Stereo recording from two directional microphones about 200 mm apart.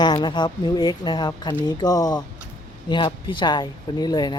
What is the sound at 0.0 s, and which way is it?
Speech, 20° left (ahead or behind).